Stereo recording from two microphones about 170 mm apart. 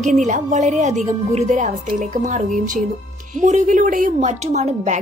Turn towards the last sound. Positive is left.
turn(degrees=-45)  # may be behind; listen again after turning